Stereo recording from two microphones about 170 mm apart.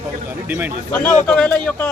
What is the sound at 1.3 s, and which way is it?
Speech, 5° left (ahead or behind).